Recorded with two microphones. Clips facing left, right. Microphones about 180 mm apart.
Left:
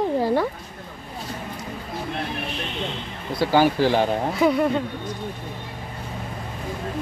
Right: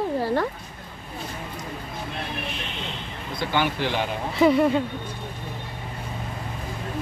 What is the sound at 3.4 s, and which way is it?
Speech, 40° left (ahead or behind).